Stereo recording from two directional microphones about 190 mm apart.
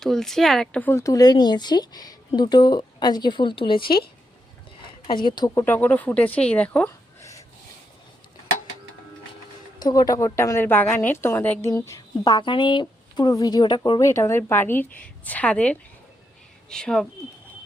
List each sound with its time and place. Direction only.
0.0 s speech: centre (ahead or behind); by 3.8 s 25° left (ahead or behind)
3.8 s a woman's voice: 50° left (ahead or behind)
5.0 s speech: 25° left (ahead or behind)
5.6 s speech: 10° left (ahead or behind)
9.8 s a woman's voice: 20° left (ahead or behind); by 17.1 s 5° left (ahead or behind)